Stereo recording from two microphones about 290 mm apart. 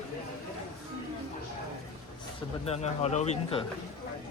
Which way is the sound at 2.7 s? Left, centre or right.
Left.